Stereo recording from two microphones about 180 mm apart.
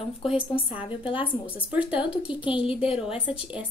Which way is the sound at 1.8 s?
25° left (ahead or behind).